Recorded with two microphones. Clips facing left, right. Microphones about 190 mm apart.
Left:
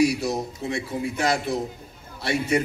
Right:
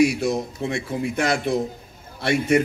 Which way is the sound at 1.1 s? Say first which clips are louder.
Right 1 dB; 55° right (ahead or behind).